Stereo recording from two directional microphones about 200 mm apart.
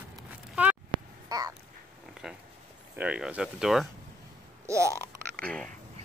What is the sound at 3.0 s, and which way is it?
Speech, 5° right (ahead or behind).